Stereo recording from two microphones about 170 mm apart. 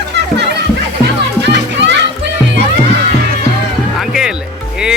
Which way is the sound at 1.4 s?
90° right.